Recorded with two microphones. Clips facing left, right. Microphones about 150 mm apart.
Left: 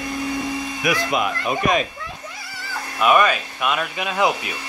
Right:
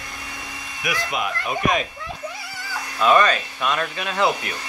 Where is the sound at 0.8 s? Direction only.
60° left (ahead or behind).